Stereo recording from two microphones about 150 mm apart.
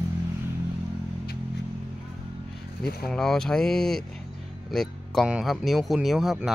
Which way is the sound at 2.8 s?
90° left.